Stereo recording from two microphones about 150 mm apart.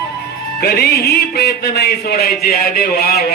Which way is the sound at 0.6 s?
90° left.